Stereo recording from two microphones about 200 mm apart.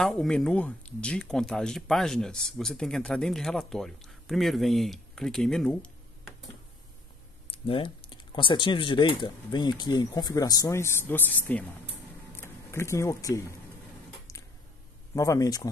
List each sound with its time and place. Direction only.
0.0 s speech: centre (ahead or behind)
7.5 s speech: 25° left (ahead or behind); by 11.6 s 10° left (ahead or behind)
12.4 s a sound: 15° left (ahead or behind)
15.1 s speech: 15° left (ahead or behind)